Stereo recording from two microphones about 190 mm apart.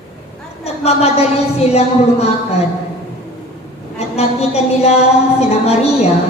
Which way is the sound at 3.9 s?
35° left (ahead or behind).